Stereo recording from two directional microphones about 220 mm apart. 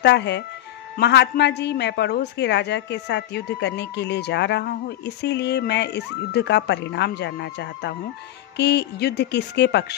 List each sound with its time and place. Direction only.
0.0 s a woman's voice: 50° left (ahead or behind)